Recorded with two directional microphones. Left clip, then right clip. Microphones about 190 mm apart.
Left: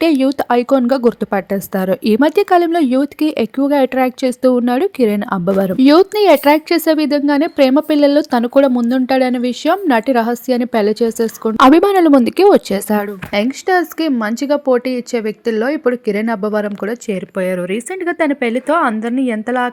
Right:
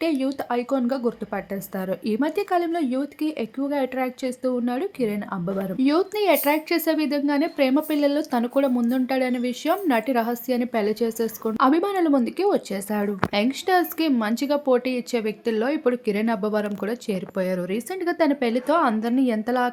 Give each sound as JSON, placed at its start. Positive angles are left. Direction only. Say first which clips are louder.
{"t": 0.0, "sound": "speech", "louder": "left 11 dB", "side_deg": 55}
{"t": 13.3, "sound": "a woman's voice", "louder": "left 8 dB", "side_deg": 30}